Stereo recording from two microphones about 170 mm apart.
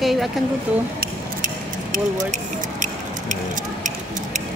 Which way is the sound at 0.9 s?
55° right (ahead or behind).